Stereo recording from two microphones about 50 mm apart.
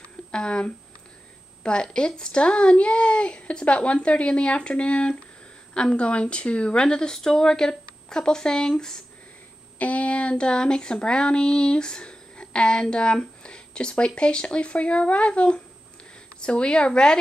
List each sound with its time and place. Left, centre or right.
0.0 s a sound: centre
1.6 s speech: centre
9.8 s speech: left